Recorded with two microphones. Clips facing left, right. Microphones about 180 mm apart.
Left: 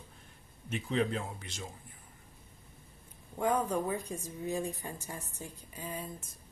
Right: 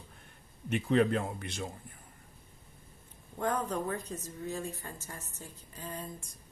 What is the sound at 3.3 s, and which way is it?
A woman's voice, 10° left (ahead or behind).